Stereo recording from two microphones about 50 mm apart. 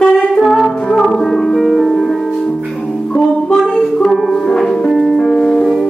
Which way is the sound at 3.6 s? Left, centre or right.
Centre.